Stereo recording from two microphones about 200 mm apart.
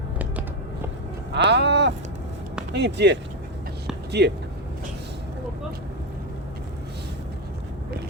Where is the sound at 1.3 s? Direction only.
60° right (ahead or behind).